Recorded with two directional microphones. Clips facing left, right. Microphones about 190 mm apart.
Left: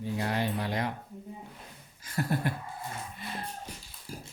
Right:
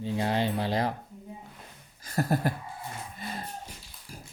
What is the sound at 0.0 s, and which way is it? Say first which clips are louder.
Speech: right 3 dB; 25° right (ahead or behind).